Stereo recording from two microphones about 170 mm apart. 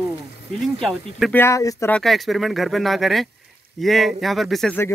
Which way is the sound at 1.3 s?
15° left (ahead or behind).